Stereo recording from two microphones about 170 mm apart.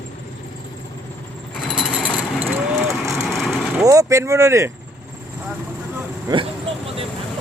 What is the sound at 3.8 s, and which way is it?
Speech, 20° right (ahead or behind).